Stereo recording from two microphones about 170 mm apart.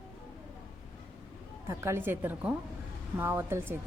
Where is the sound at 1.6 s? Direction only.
15° right (ahead or behind).